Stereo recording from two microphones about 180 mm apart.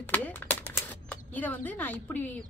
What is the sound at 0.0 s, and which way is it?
Speech, 10° left (ahead or behind).